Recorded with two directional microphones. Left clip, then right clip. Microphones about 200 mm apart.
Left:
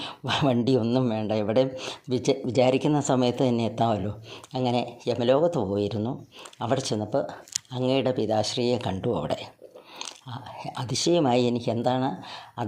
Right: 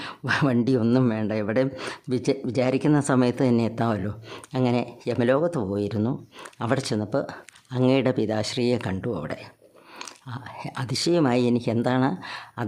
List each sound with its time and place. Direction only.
0.0 s a sound: 10° right (ahead or behind)
0.8 s speech: 25° right (ahead or behind)
1.1 s speech: 10° right (ahead or behind)
9.0 s speech: 5° right (ahead or behind)